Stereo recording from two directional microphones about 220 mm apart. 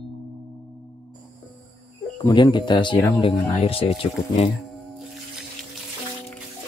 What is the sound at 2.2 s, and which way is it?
Speech, 20° left (ahead or behind).